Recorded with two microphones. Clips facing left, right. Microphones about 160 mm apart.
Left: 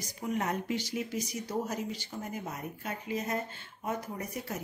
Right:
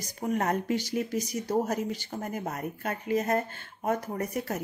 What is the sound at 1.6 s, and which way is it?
Speech, 50° right (ahead or behind).